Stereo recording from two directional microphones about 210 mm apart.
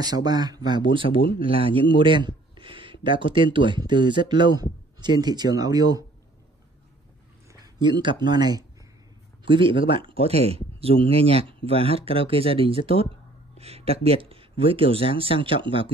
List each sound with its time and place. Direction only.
0.0 s speech: 20° right (ahead or behind)
7.6 s speech: 20° right (ahead or behind)